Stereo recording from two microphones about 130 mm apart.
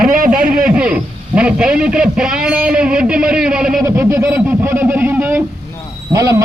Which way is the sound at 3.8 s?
20° right (ahead or behind).